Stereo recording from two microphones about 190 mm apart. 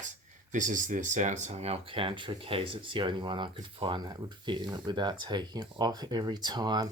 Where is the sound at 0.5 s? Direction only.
40° right (ahead or behind); by 6.9 s 20° right (ahead or behind).